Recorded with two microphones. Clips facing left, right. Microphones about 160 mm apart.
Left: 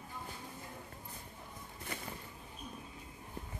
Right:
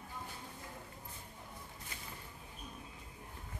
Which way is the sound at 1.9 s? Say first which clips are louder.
Left 10 dB; 60° left (ahead or behind).